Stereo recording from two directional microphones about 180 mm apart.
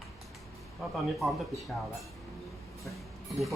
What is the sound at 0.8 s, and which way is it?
Speech, centre (ahead or behind).